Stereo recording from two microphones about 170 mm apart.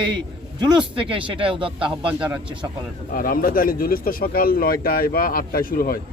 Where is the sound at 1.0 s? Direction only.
30° right (ahead or behind).